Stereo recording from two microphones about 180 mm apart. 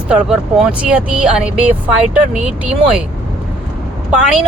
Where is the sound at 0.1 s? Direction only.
5° right (ahead or behind).